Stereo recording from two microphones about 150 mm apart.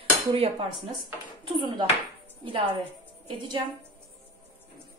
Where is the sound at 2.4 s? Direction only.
35° right (ahead or behind).